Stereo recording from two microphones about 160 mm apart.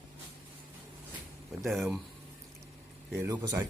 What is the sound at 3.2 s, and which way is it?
Speech, 20° right (ahead or behind).